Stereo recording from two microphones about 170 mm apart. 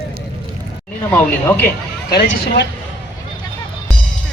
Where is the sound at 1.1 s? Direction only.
10° left (ahead or behind).